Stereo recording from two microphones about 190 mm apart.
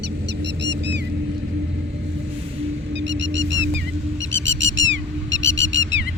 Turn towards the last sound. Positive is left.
turn(degrees=-75)  # may be behind; listen again after turning